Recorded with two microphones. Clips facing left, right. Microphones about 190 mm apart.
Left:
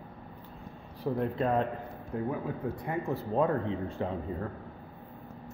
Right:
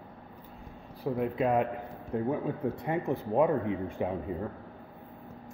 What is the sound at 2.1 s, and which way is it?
Speech, 25° right (ahead or behind).